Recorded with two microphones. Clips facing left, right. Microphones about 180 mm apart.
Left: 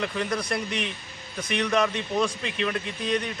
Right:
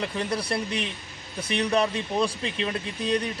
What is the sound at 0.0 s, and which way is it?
Speech, 30° right (ahead or behind).